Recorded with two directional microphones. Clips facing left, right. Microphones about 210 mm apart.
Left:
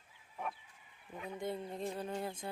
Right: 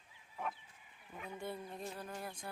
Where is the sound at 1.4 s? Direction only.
20° left (ahead or behind).